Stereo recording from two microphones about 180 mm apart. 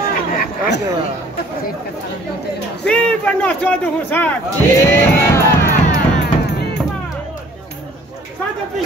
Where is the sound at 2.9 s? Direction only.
5° left (ahead or behind).